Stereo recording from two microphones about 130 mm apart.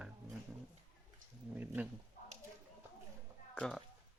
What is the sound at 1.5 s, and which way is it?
Speech, 15° right (ahead or behind).